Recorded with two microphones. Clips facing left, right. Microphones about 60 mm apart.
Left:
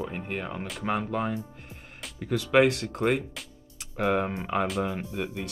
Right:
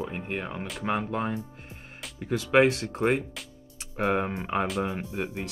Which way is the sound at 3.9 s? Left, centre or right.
Right.